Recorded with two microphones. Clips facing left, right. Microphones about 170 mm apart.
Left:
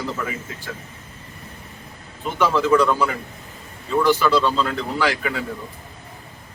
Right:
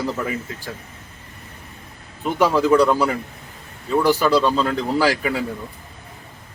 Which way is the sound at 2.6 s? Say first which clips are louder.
Right 2 dB; 35° right (ahead or behind).